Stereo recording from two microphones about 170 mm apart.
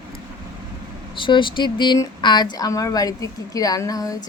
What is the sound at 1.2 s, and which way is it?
Speech, 30° left (ahead or behind).